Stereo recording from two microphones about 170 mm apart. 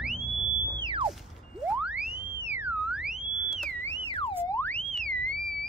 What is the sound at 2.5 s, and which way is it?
Theremin, 10° right (ahead or behind).